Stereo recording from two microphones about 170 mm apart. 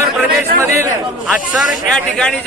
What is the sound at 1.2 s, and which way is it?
Speech, centre (ahead or behind).